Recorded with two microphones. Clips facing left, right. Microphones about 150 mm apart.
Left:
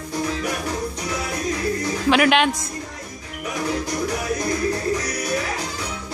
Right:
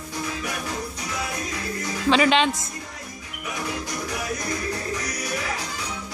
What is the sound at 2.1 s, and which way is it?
Speech, 10° left (ahead or behind).